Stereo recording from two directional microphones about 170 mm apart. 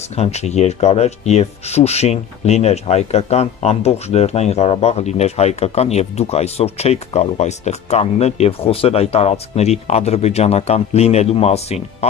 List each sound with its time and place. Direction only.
0.1 s speech: 40° left (ahead or behind)